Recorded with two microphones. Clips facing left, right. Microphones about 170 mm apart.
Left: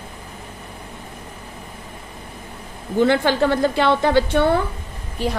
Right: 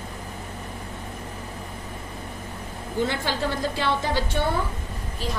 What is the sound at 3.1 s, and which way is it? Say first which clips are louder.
A woman's voice: left 10 dB; 65° left (ahead or behind).